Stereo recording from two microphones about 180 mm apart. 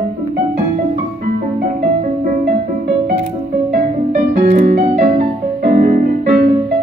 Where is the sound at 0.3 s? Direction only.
45° right (ahead or behind).